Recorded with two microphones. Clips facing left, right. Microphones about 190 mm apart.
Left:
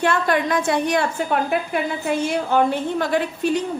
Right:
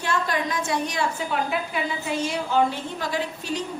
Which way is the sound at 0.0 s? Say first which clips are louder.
Left 6 dB; 60° left (ahead or behind).